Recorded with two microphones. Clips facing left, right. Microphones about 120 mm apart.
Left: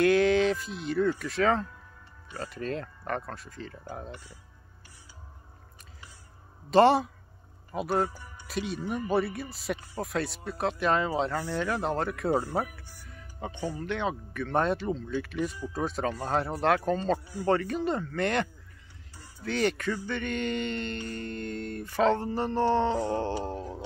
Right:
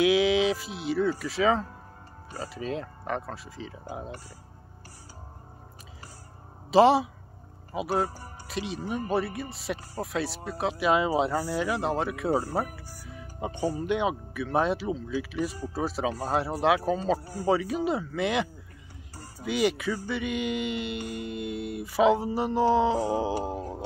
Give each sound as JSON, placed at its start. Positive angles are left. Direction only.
{"t": 0.0, "sound": "speech", "side_deg": -5}
{"t": 6.7, "sound": "speech", "side_deg": 0}
{"t": 12.9, "sound": "music", "side_deg": -5}
{"t": 13.5, "sound": "speech", "side_deg": -40}
{"t": 13.7, "sound": "speech", "side_deg": -15}
{"t": 17.2, "sound": "speech", "side_deg": -40}
{"t": 17.5, "sound": "speech", "side_deg": -5}
{"t": 19.4, "sound": "mantra", "side_deg": -10}